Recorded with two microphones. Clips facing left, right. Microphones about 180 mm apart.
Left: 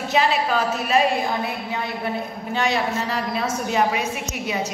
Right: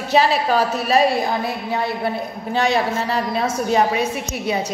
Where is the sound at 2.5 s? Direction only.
30° right (ahead or behind).